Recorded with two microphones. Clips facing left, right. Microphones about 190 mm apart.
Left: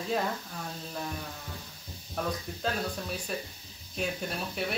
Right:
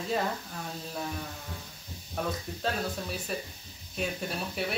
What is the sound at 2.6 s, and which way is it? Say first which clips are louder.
Speech: right 1 dB; centre (ahead or behind).